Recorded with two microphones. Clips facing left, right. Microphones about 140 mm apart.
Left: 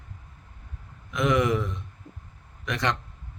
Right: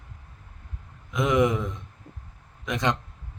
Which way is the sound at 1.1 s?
20° right (ahead or behind).